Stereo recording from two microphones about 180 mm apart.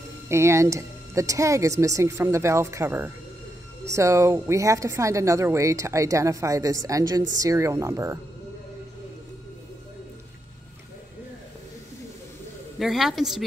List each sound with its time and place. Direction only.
0.3 s speech: 15° right (ahead or behind)
12.7 s a woman's voice: centre (ahead or behind)